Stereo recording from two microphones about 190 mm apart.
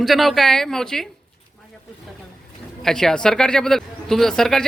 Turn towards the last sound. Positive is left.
turn(degrees=5)  # may be behind; listen again after turning